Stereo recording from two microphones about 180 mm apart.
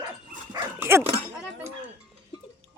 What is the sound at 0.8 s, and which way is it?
Dog, 15° right (ahead or behind).